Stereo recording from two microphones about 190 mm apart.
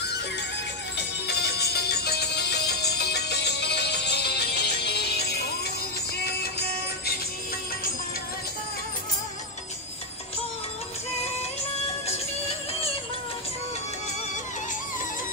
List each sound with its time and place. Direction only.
0.9 s music: 60° left (ahead or behind)